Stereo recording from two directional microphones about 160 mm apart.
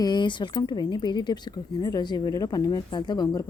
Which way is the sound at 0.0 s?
25° left (ahead or behind).